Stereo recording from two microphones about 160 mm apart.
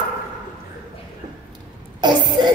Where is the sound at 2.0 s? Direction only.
25° right (ahead or behind).